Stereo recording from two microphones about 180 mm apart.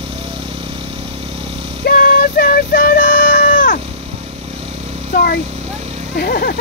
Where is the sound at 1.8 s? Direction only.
55° left (ahead or behind).